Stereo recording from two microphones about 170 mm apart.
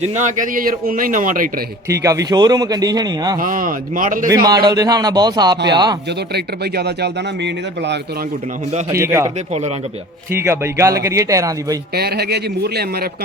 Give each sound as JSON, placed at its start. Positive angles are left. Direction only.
{"t": 0.1, "sound": "a man's voice", "side_deg": -45}
{"t": 1.9, "sound": "a man's voice", "side_deg": -20}
{"t": 3.3, "sound": "a man's voice", "side_deg": -55}
{"t": 4.4, "sound": "a man's voice", "side_deg": -25}
{"t": 6.1, "sound": "speech", "side_deg": -75}
{"t": 8.9, "sound": "speech", "side_deg": -15}
{"t": 9.5, "sound": "speech", "side_deg": -40}
{"t": 10.3, "sound": "speech", "side_deg": -15}
{"t": 11.9, "sound": "a man's voice", "side_deg": -70}